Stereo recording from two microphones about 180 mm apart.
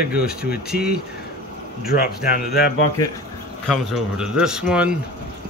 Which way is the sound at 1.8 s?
55° left (ahead or behind).